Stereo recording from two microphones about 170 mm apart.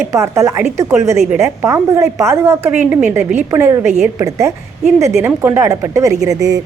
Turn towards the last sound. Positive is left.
turn(degrees=-20)  # may be behind; listen again after turning